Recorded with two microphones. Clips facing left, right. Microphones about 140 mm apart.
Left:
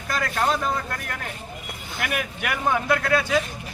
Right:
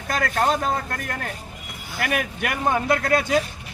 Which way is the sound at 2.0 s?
40° right (ahead or behind).